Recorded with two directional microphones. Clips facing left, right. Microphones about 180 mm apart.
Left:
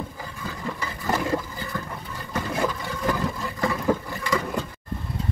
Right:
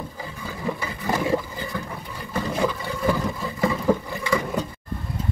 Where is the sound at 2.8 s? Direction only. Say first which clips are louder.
Right 2 dB; 5° right (ahead or behind).